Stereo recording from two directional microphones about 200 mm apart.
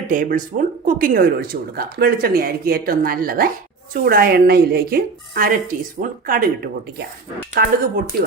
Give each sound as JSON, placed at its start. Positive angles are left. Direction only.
{"t": 0.1, "sound": "speech", "side_deg": -40}